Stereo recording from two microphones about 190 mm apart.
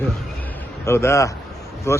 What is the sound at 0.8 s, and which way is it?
Speech, 15° left (ahead or behind).